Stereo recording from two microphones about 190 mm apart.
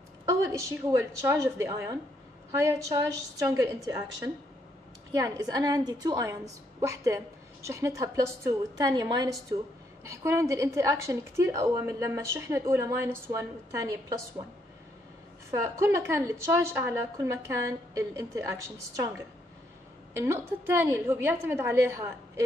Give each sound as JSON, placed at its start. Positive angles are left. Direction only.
{"t": 0.2, "sound": "a woman's voice", "side_deg": -15}
{"t": 3.3, "sound": "a woman's voice", "side_deg": -15}
{"t": 15.5, "sound": "a woman's voice", "side_deg": -15}
{"t": 20.2, "sound": "a woman's voice", "side_deg": -10}